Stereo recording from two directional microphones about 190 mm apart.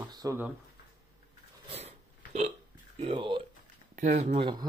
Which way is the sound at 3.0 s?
25° right (ahead or behind).